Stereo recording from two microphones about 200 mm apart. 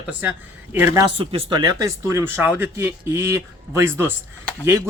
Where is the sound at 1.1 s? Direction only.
25° right (ahead or behind).